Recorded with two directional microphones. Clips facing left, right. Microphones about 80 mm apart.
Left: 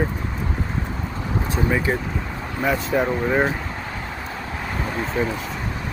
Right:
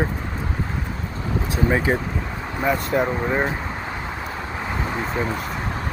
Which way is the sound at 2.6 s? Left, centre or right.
Centre.